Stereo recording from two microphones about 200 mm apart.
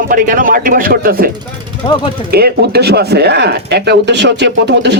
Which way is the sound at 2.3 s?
55° right (ahead or behind).